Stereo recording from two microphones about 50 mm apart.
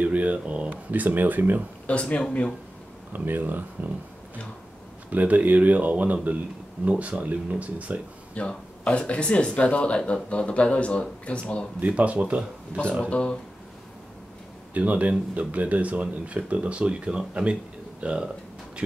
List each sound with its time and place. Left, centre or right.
0.0 s speech: right
1.9 s speech: left
3.1 s speech: right
5.1 s speech: right
8.4 s speech: left
11.8 s speech: right
13.0 s speech: left
14.7 s speech: right